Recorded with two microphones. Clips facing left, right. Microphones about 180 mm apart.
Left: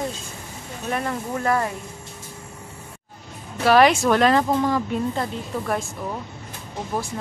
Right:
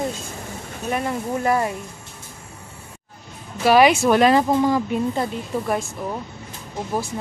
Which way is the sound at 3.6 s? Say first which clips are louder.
Right 1 dB; 5° right (ahead or behind).